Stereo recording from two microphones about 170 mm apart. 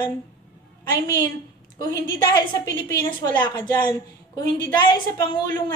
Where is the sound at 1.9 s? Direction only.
25° left (ahead or behind).